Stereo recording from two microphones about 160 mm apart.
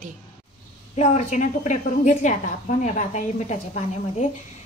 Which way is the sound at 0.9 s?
45° left (ahead or behind).